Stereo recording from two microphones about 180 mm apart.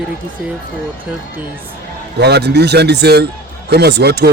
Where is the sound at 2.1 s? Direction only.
65° right (ahead or behind).